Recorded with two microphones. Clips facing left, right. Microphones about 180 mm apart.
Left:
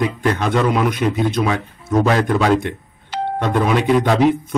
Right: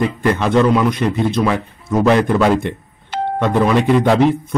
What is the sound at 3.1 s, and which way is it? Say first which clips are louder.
Doorbell: right 2 dB; 50° right (ahead or behind).